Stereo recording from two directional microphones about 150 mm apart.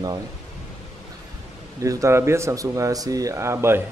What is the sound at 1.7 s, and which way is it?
Speech, 20° right (ahead or behind).